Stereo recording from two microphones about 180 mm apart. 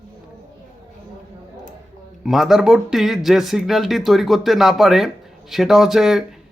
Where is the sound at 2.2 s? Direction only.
Centre (ahead or behind).